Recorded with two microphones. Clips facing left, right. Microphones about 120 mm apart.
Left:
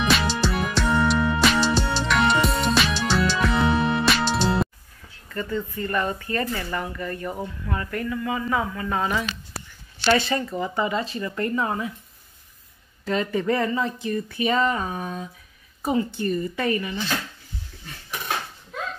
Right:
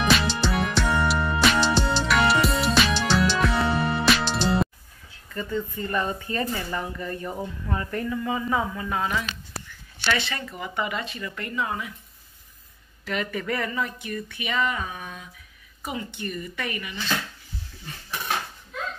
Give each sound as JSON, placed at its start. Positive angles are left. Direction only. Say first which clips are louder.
{"t": 0.0, "sound": "music", "louder": "even", "side_deg": 0}
{"t": 5.3, "sound": "speech", "louder": "left 1 dB", "side_deg": -15}
{"t": 8.8, "sound": "speech", "louder": "left 2 dB", "side_deg": 5}
{"t": 9.9, "sound": "speech", "louder": "left 6 dB", "side_deg": 40}
{"t": 13.0, "sound": "speech", "louder": "left 5 dB", "side_deg": 30}